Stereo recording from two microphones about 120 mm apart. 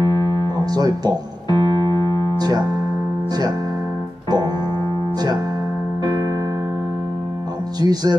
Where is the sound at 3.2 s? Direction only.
35° right (ahead or behind).